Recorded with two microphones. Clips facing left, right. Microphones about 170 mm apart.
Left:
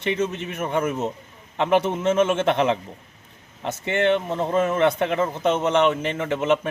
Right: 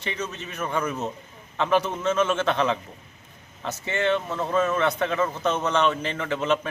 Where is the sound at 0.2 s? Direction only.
25° left (ahead or behind).